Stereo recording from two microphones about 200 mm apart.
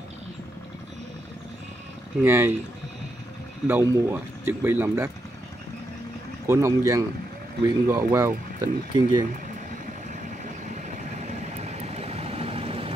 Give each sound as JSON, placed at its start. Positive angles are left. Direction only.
{"t": 2.2, "sound": "speech", "side_deg": -10}
{"t": 3.6, "sound": "speech", "side_deg": -15}
{"t": 6.4, "sound": "speech", "side_deg": -15}
{"t": 10.4, "sound": "vehicle", "side_deg": -35}